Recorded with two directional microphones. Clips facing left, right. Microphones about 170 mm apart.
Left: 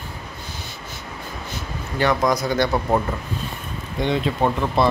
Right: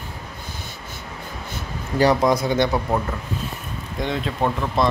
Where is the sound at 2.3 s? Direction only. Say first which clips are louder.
Right 1 dB; 25° right (ahead or behind).